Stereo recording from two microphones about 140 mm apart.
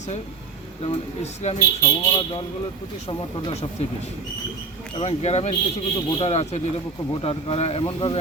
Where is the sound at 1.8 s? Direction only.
35° left (ahead or behind).